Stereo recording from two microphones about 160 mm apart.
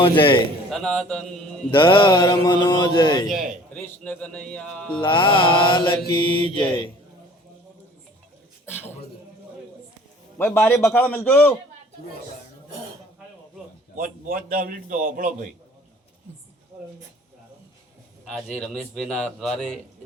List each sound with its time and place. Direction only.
0.0 s mantra: 30° left (ahead or behind)
0.7 s a man's voice: 5° left (ahead or behind)
1.7 s mantra: 30° left (ahead or behind)
2.6 s music: 25° left (ahead or behind)
3.2 s a man's voice: 55° right (ahead or behind)
3.8 s a man's voice: 10° left (ahead or behind)
4.9 s mantra: 30° left (ahead or behind)
8.6 s a man's voice: 10° left (ahead or behind)
10.3 s a man's voice: 10° left (ahead or behind)
13.9 s a man's voice: 60° right (ahead or behind)
18.3 s a man's voice: centre (ahead or behind)